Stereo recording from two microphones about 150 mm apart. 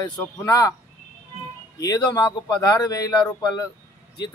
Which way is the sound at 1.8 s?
25° left (ahead or behind).